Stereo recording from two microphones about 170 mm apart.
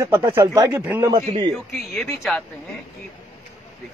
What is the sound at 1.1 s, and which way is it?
Speech, 40° right (ahead or behind).